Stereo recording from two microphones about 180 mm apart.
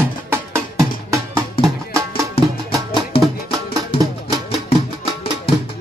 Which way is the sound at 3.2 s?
20° right (ahead or behind).